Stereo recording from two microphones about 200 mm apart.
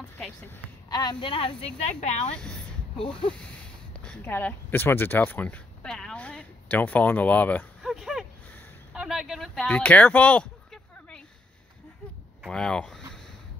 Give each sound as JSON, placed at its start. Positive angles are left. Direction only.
{"t": 0.8, "sound": "a woman's voice", "side_deg": 20}
{"t": 2.2, "sound": "a woman's voice", "side_deg": 5}
{"t": 3.0, "sound": "a woman's voice", "side_deg": 25}
{"t": 4.0, "sound": "a sound", "side_deg": 10}
{"t": 12.4, "sound": "speech", "side_deg": 5}